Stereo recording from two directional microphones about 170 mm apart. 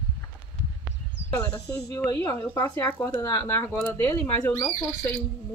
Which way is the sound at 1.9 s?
15° left (ahead or behind).